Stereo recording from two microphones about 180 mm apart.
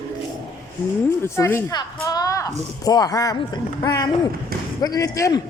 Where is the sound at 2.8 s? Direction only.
20° left (ahead or behind).